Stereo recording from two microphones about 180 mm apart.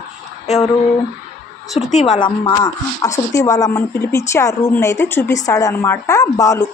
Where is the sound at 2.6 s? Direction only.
20° left (ahead or behind).